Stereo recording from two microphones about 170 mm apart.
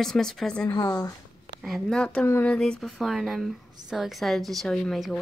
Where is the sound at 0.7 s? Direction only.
25° left (ahead or behind).